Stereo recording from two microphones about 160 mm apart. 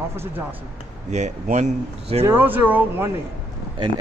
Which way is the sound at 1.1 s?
45° right (ahead or behind).